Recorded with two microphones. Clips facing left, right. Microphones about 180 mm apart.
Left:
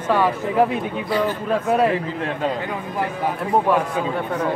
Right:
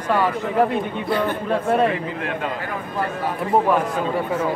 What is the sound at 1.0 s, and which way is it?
Speech, 55° right (ahead or behind).